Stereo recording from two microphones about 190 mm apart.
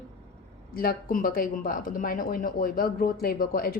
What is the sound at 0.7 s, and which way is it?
A woman's voice, 50° left (ahead or behind).